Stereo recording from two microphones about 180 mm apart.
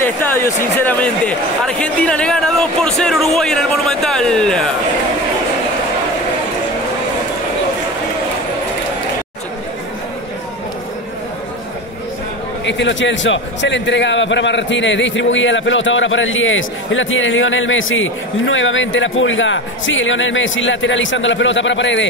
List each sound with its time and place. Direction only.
0.0 s speech: 15° left (ahead or behind)
12.6 s a man's voice: 90° left